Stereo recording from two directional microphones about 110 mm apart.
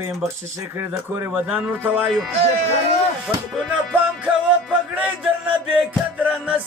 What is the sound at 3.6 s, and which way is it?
Music, 10° right (ahead or behind).